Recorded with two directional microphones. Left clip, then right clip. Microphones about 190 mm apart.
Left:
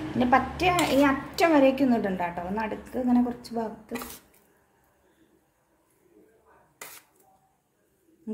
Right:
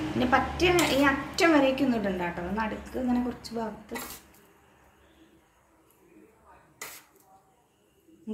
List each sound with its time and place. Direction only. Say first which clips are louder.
0.2 s a woman's voice: left 2 dB; 55° left (ahead or behind)